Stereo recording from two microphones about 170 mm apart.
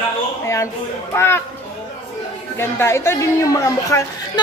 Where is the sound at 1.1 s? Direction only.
15° left (ahead or behind).